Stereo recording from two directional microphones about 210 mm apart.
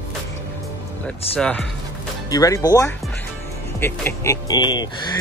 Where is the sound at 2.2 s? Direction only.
15° left (ahead or behind).